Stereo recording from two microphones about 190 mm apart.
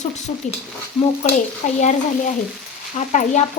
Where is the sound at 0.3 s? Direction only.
35° left (ahead or behind).